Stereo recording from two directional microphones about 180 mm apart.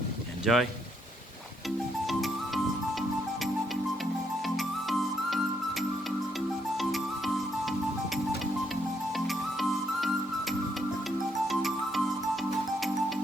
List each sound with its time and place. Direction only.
0.4 s speech: centre (ahead or behind)
4.4 s music: centre (ahead or behind)
9.1 s music: centre (ahead or behind)